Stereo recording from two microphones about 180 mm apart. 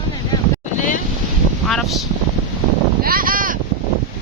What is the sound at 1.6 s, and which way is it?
Speech, centre (ahead or behind).